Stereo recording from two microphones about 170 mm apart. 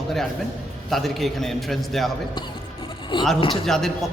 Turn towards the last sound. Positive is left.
turn(degrees=0)  # may be behind; listen again after turning